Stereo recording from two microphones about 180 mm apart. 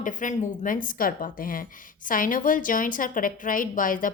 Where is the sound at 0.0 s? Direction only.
45° left (ahead or behind).